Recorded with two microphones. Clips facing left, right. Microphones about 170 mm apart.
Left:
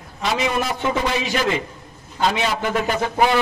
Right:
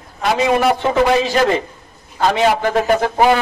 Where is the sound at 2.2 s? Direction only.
45° right (ahead or behind).